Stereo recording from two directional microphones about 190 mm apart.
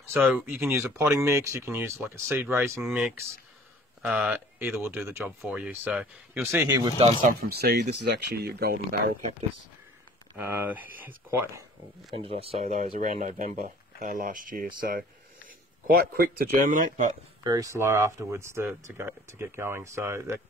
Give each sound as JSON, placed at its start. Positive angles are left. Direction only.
{"t": 0.0, "sound": "speech", "side_deg": -10}
{"t": 6.8, "sound": "speech", "side_deg": -30}
{"t": 7.2, "sound": "speech", "side_deg": -50}
{"t": 10.3, "sound": "speech", "side_deg": -10}
{"t": 12.1, "sound": "speech", "side_deg": -30}
{"t": 17.4, "sound": "speech", "side_deg": -20}